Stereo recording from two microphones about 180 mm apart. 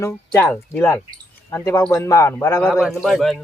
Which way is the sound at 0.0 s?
10° left (ahead or behind).